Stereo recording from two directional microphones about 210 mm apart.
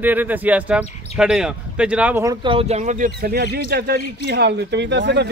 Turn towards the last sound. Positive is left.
turn(degrees=-55)  # may be behind; listen again after turning